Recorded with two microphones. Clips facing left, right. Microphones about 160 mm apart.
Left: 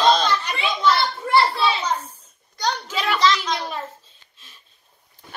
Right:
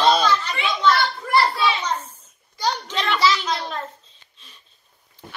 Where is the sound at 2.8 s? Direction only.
5° left (ahead or behind).